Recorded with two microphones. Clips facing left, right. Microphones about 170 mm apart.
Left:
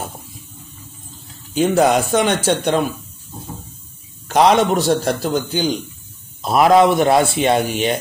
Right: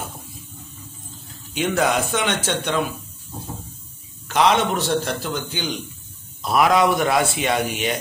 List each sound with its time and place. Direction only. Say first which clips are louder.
1.5 s a man's voice: left 6 dB; 40° left (ahead or behind)
4.3 s a man's voice: left 5 dB; 40° left (ahead or behind)